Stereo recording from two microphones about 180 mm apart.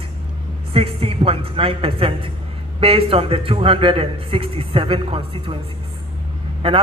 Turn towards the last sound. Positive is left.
turn(degrees=-30)  # may be behind; listen again after turning